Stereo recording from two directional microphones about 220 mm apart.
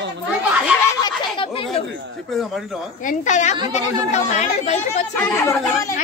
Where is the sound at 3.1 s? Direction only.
35° left (ahead or behind).